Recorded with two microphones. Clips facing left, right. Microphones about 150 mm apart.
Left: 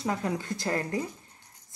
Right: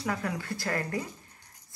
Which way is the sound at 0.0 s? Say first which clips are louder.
Left 2 dB; 20° left (ahead or behind).